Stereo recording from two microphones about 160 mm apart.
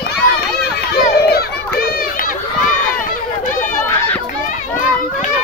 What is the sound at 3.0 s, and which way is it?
Run, 55° left (ahead or behind).